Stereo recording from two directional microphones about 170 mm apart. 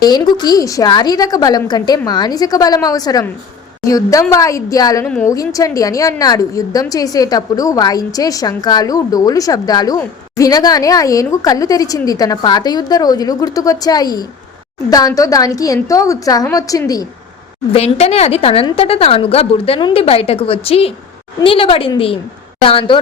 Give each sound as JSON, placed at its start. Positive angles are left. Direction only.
{"t": 0.0, "sound": "a woman's voice", "side_deg": 25}
{"t": 5.0, "sound": "a woman's voice", "side_deg": 5}
{"t": 5.3, "sound": "a woman's voice", "side_deg": 20}
{"t": 17.7, "sound": "a woman's voice", "side_deg": 40}